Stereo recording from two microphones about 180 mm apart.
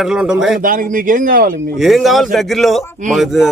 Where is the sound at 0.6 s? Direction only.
50° right (ahead or behind).